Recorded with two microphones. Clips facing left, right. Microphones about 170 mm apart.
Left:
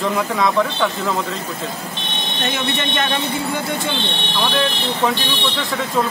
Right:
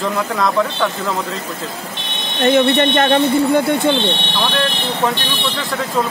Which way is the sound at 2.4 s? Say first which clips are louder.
Right 11 dB; 55° right (ahead or behind).